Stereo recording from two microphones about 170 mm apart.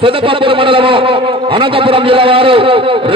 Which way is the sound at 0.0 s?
30° right (ahead or behind).